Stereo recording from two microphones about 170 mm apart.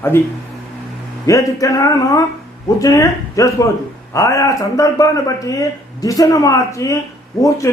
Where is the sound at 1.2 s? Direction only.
20° left (ahead or behind).